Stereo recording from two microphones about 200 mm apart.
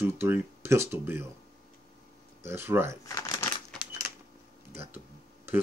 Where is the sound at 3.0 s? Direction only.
15° left (ahead or behind).